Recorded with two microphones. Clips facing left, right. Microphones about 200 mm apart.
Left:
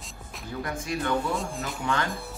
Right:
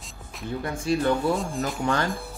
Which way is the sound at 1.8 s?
35° right (ahead or behind).